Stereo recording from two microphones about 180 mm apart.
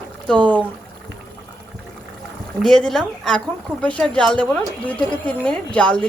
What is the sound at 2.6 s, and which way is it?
A woman's voice, centre (ahead or behind).